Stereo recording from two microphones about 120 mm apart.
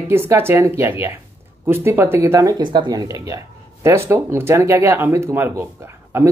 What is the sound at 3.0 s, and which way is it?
Speech, 25° right (ahead or behind).